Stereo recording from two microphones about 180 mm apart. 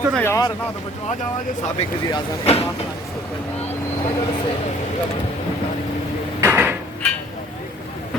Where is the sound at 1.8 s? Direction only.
35° left (ahead or behind).